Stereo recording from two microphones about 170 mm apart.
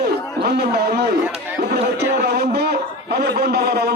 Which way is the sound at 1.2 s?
10° right (ahead or behind).